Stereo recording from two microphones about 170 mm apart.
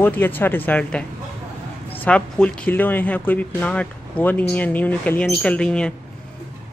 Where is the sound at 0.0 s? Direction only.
10° left (ahead or behind).